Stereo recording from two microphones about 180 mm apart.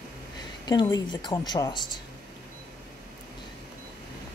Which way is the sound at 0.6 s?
25° left (ahead or behind).